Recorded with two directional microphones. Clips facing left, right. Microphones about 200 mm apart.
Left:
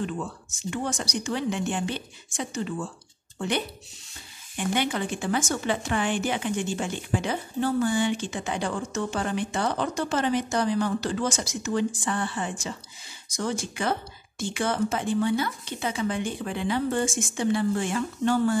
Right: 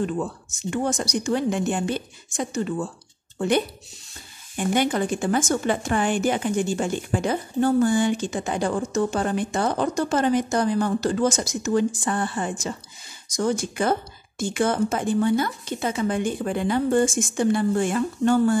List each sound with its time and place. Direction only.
0.7 s a woman's voice: 45° right (ahead or behind)